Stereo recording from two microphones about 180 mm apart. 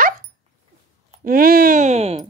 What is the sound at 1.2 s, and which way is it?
Speech, 55° right (ahead or behind).